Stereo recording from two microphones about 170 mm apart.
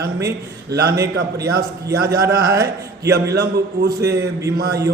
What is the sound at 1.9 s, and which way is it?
Speech, 70° right (ahead or behind).